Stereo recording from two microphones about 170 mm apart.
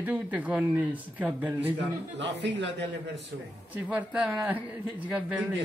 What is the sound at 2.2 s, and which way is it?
Speech, 90° right.